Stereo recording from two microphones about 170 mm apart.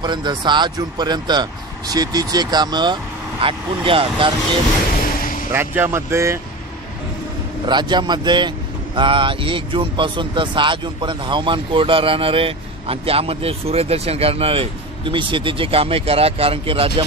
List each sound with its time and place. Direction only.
0.0 s speech: 25° right (ahead or behind)
5.5 s speech: 15° right (ahead or behind)
7.6 s speech: 25° right (ahead or behind)